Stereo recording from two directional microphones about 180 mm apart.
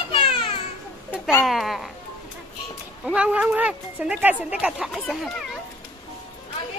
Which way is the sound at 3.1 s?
5° right (ahead or behind).